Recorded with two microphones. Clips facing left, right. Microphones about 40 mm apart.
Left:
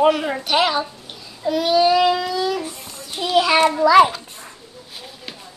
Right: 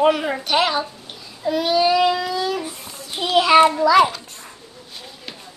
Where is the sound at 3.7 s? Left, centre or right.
Centre.